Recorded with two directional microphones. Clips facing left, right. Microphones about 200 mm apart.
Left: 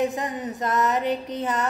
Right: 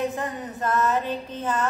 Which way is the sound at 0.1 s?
15° left (ahead or behind).